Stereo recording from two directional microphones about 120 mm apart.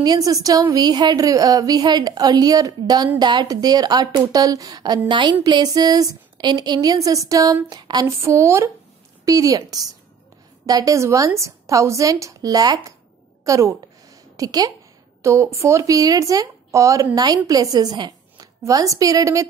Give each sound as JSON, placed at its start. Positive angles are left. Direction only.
{"t": 0.0, "sound": "a woman's voice", "side_deg": -30}